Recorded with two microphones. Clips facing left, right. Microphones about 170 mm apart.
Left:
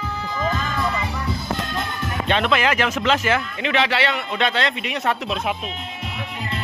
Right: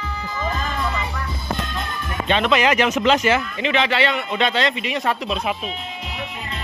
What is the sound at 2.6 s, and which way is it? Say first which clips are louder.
Speech: right 3 dB; 10° right (ahead or behind).